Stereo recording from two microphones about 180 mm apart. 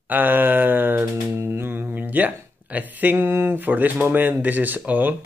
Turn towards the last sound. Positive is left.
turn(degrees=-10)  # may be behind; listen again after turning